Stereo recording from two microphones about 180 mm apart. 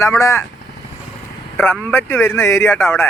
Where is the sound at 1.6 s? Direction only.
10° left (ahead or behind).